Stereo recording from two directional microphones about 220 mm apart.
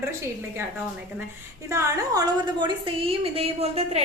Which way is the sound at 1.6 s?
15° right (ahead or behind).